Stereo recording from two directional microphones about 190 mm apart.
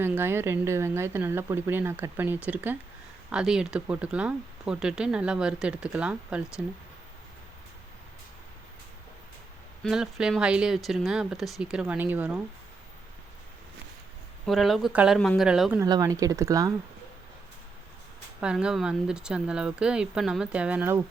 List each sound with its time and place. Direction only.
0.0 s speech: 10° right (ahead or behind)
9.8 s speech: 5° right (ahead or behind)
14.4 s speech: centre (ahead or behind)
15.8 s speech: 15° right (ahead or behind)
18.3 s speech: 5° right (ahead or behind)